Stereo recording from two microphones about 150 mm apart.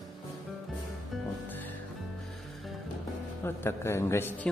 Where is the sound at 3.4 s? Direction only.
15° left (ahead or behind).